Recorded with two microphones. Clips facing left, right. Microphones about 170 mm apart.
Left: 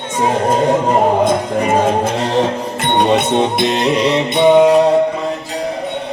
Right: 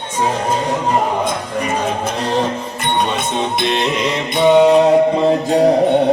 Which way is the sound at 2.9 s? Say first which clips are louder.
Left 7 dB; 65° left (ahead or behind).